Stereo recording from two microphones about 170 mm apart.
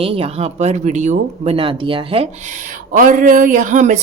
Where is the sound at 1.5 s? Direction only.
30° right (ahead or behind).